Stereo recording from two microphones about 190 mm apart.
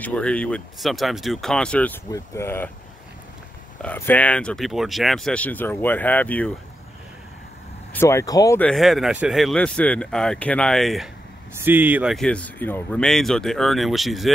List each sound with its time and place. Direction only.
0.0 s speech: 5° left (ahead or behind)
3.8 s speech: 10° left (ahead or behind)
7.9 s speech: 15° left (ahead or behind)
8.5 s speech: centre (ahead or behind)
11.5 s speech: 10° right (ahead or behind)